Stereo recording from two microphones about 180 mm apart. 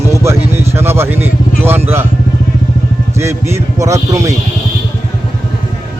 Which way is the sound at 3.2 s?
15° right (ahead or behind).